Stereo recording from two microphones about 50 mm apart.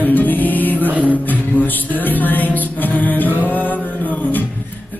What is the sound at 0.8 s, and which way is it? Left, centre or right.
Music, right.